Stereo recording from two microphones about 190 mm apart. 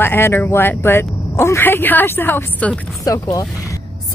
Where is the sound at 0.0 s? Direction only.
10° left (ahead or behind).